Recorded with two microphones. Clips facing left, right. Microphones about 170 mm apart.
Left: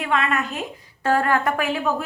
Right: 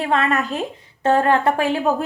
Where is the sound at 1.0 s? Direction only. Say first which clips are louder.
Right 4 dB; 25° right (ahead or behind).